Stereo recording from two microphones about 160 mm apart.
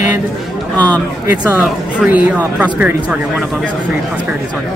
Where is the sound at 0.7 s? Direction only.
10° left (ahead or behind).